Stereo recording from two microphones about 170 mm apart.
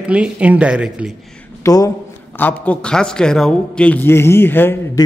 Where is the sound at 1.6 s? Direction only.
20° left (ahead or behind).